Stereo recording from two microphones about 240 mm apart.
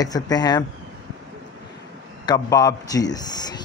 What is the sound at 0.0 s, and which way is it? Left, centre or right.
Speech, centre.